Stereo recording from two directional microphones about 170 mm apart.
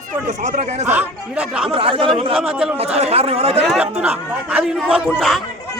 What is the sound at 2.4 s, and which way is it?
Speech, 5° right (ahead or behind).